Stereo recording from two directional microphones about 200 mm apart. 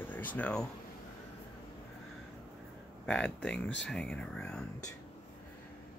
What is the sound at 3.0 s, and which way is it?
Speech, 5° left (ahead or behind).